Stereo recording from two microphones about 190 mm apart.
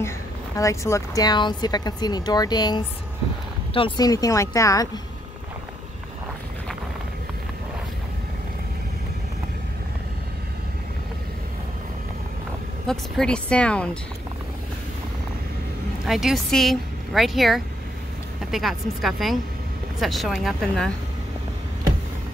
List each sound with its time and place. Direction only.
0.6 s speech: 15° left (ahead or behind)
12.8 s speech: centre (ahead or behind)
16.1 s speech: centre (ahead or behind)